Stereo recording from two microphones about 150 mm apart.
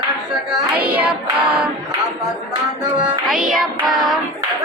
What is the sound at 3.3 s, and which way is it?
Child singing, centre (ahead or behind).